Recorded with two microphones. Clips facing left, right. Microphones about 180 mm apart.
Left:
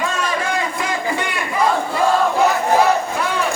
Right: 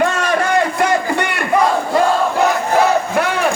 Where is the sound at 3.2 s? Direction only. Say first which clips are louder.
Right 4 dB; 65° right (ahead or behind).